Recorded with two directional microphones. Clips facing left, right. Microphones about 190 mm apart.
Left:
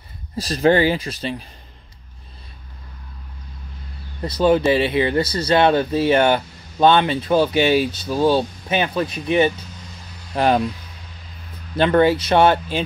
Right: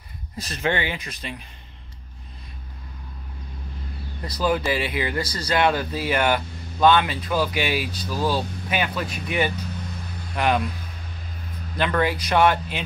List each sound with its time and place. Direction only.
0.4 s speech: 35° left (ahead or behind)
4.2 s speech: 25° left (ahead or behind)
11.7 s speech: 30° left (ahead or behind)